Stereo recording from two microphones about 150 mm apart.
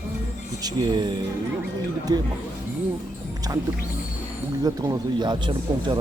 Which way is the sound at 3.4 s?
25° right (ahead or behind).